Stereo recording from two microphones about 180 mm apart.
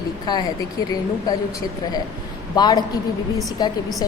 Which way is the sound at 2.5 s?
20° left (ahead or behind).